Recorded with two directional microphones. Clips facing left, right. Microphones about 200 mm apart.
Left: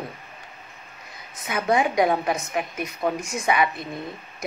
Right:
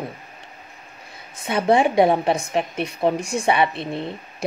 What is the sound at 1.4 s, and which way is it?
Speech, 30° right (ahead or behind).